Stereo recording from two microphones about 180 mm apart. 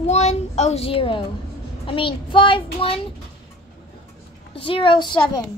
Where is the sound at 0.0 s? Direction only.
40° left (ahead or behind).